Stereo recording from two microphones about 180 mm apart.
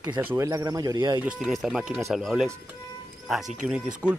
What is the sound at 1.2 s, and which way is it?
Speech, 5° right (ahead or behind).